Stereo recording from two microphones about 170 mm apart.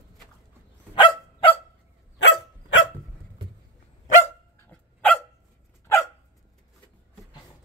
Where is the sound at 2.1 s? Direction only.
90° left.